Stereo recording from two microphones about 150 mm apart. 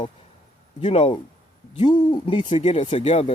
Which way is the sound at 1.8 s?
30° left (ahead or behind).